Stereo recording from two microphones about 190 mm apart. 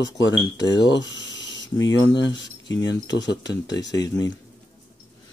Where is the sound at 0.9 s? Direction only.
70° left (ahead or behind).